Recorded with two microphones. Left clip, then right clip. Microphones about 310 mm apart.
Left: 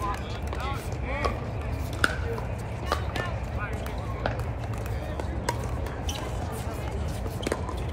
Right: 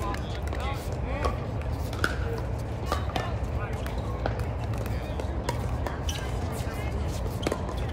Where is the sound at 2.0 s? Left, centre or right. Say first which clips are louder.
Left 4 dB; left.